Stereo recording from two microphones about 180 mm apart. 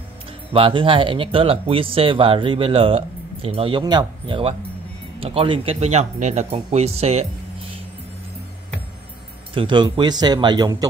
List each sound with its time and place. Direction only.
0.5 s speech: 30° right (ahead or behind)
9.5 s speech: 30° right (ahead or behind)